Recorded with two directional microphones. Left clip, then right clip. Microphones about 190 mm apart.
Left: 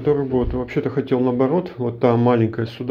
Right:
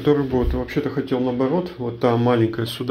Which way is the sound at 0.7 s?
20° left (ahead or behind).